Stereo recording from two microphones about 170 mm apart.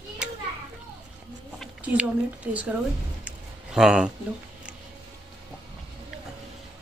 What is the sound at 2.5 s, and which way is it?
Speech, 10° right (ahead or behind).